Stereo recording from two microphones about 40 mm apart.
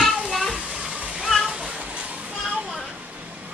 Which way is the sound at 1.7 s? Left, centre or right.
Right.